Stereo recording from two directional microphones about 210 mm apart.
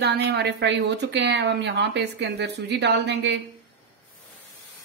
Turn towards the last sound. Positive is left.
turn(degrees=-55)  # may be behind; listen again after turning